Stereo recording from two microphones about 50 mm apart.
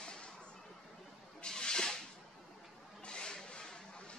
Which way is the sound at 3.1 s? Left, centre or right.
Centre.